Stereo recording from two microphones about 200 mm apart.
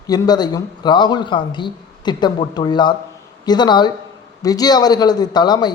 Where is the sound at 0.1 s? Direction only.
20° left (ahead or behind).